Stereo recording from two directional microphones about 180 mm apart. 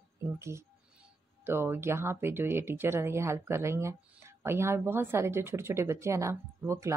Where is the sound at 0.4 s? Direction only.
15° right (ahead or behind).